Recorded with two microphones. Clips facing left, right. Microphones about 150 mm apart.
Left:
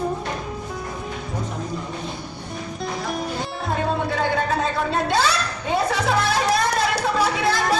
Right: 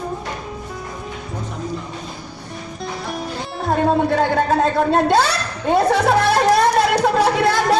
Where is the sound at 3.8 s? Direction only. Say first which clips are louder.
Right 7 dB; 50° right (ahead or behind).